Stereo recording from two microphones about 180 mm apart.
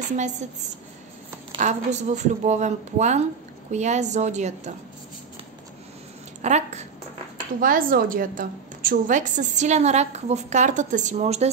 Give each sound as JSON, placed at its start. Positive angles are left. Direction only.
{"t": 0.4, "sound": "a woman's voice", "side_deg": -40}
{"t": 1.6, "sound": "a woman's voice", "side_deg": -40}
{"t": 6.4, "sound": "a woman's voice", "side_deg": -40}
{"t": 7.6, "sound": "a woman's voice", "side_deg": -50}